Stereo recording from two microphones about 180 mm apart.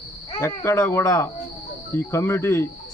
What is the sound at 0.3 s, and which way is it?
Speech, 15° left (ahead or behind).